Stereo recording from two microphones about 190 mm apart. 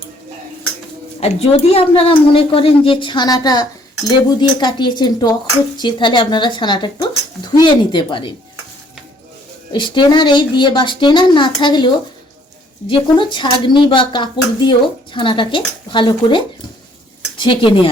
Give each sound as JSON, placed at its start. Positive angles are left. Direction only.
{"t": 1.2, "sound": "speech", "side_deg": 30}
{"t": 9.7, "sound": "speech", "side_deg": 25}
{"t": 12.9, "sound": "speech", "side_deg": 25}